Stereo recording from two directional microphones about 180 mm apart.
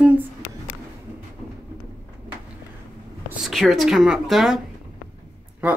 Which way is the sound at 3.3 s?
Centre (ahead or behind).